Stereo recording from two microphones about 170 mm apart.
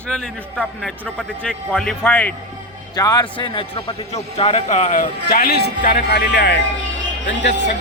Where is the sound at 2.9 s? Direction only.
25° left (ahead or behind); by 6.6 s 85° left.